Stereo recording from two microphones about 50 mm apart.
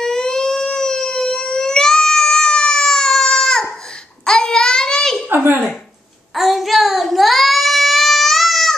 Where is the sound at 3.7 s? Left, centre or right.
Centre.